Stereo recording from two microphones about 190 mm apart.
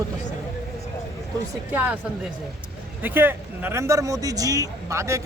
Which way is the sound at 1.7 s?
10° right (ahead or behind).